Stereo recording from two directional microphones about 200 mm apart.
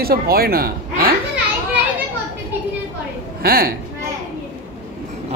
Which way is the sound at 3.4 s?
50° right (ahead or behind).